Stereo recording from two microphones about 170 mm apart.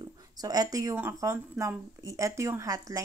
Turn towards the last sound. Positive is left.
turn(degrees=-20)  # may be behind; listen again after turning